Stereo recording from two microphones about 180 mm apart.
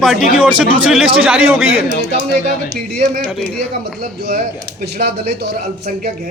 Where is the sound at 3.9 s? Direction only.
55° right (ahead or behind).